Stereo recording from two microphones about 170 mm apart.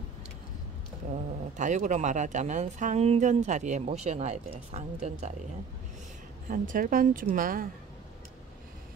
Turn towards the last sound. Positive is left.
turn(degrees=-55)  # may be behind; listen again after turning